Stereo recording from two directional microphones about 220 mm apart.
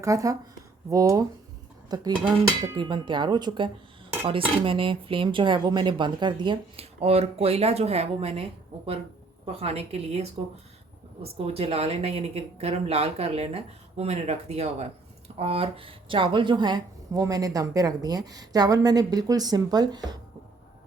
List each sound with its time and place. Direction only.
0.0 s speech: 15° right (ahead or behind)
9.5 s speech: 25° right (ahead or behind)